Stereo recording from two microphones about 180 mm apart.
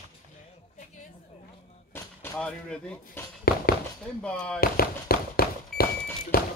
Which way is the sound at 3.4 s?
60° left (ahead or behind).